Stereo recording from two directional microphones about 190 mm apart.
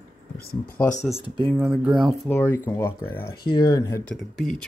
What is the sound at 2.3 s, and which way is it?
Speech, 10° left (ahead or behind).